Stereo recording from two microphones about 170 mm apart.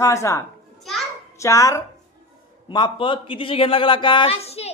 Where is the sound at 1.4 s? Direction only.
20° left (ahead or behind).